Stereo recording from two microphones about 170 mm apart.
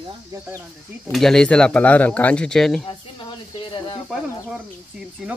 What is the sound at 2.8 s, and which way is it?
Speech, 30° left (ahead or behind).